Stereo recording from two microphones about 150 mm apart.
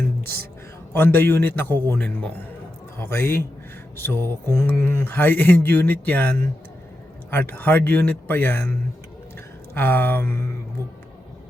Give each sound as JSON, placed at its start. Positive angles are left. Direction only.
{"t": 0.9, "sound": "speech", "side_deg": 15}
{"t": 9.7, "sound": "speech", "side_deg": 10}